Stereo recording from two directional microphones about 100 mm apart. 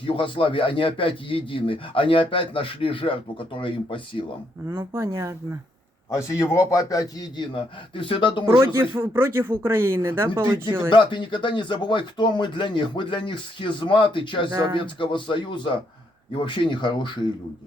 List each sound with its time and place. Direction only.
0.0 s a man's voice: 60° left (ahead or behind)
4.7 s speech: 25° right (ahead or behind)
6.1 s a man's voice: 30° left (ahead or behind)
7.5 s a man's voice: 55° left (ahead or behind)
8.6 s speech: 25° right (ahead or behind)
10.9 s a man's voice: 50° left (ahead or behind)